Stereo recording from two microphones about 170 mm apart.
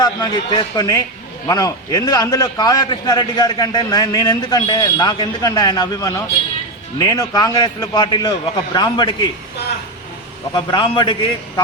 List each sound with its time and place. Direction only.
0.0 s a man's voice: 25° left (ahead or behind)
10.5 s a man's voice: 25° left (ahead or behind)